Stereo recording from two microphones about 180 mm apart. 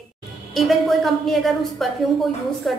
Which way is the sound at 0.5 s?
Centre (ahead or behind).